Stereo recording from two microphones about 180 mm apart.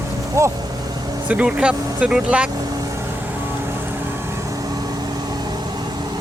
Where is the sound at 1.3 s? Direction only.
5° right (ahead or behind).